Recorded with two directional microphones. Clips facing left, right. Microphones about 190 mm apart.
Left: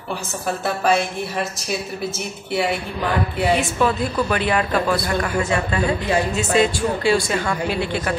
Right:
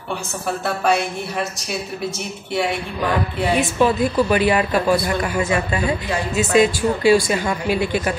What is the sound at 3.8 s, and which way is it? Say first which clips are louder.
A man's voice: right 3 dB; 15° right (ahead or behind).